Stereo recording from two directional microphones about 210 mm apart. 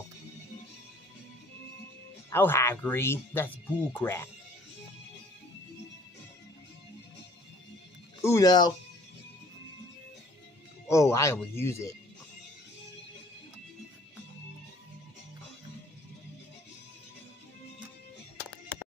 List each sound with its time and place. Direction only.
2.3 s speech: 10° left (ahead or behind)
8.2 s speech: 15° left (ahead or behind)
10.9 s speech: 15° left (ahead or behind)